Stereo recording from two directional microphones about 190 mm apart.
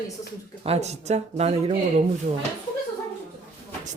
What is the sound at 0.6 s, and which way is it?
Speech, 35° right (ahead or behind).